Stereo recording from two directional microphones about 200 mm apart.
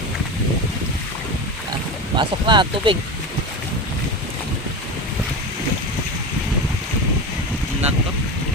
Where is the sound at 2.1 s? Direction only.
25° right (ahead or behind).